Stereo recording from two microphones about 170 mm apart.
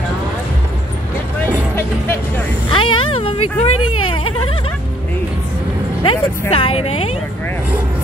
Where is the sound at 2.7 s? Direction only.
30° left (ahead or behind).